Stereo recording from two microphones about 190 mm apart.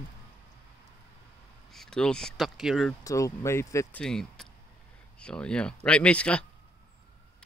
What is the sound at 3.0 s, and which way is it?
Speech, 15° left (ahead or behind).